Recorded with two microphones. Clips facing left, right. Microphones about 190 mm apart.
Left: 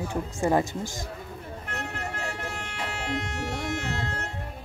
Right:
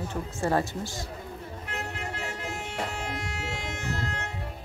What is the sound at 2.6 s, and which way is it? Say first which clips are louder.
Music: left 1 dB; 65° left (ahead or behind).